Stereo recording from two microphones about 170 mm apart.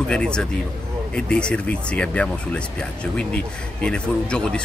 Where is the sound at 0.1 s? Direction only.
5° left (ahead or behind).